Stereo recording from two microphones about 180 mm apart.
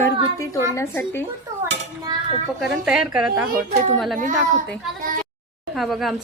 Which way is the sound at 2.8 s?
5° right (ahead or behind).